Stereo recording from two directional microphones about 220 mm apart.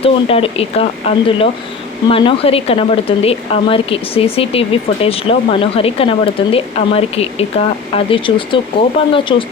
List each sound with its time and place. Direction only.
0.0 s a woman's voice: 25° left (ahead or behind)